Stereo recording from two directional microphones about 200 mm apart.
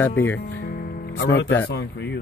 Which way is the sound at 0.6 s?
50° left (ahead or behind).